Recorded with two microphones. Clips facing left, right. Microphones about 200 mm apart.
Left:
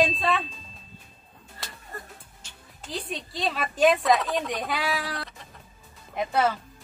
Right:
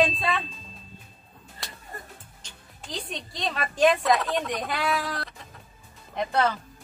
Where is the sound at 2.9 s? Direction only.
5° left (ahead or behind).